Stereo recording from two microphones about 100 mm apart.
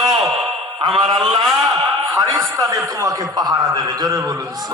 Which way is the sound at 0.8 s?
50° right (ahead or behind).